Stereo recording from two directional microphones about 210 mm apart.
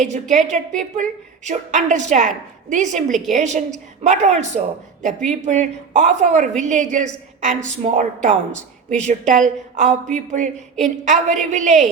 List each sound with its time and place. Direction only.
0.0 s a woman's voice: 35° right (ahead or behind)